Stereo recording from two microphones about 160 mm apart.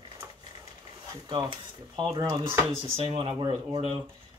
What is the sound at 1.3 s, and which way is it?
Speech, 30° right (ahead or behind).